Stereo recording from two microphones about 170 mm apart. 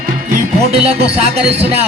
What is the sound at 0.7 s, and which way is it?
Music, 35° right (ahead or behind).